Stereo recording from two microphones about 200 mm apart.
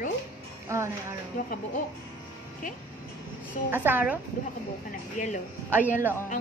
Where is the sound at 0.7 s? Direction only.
15° right (ahead or behind).